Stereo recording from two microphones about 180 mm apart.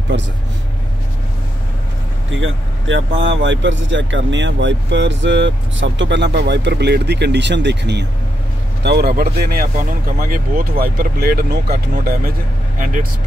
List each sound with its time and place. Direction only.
2.3 s speech: 90° right; by 12.2 s 60° right (ahead or behind)
12.7 s speech: 45° right (ahead or behind)